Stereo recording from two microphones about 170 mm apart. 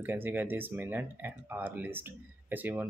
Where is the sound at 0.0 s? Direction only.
10° right (ahead or behind).